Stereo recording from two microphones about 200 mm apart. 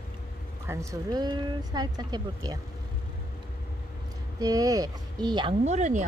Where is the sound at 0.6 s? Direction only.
15° right (ahead or behind).